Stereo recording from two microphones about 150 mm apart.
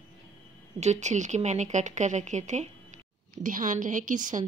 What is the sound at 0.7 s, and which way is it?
A woman's voice, 50° right (ahead or behind).